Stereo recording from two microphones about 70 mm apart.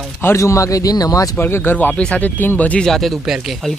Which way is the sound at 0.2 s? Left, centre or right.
Left.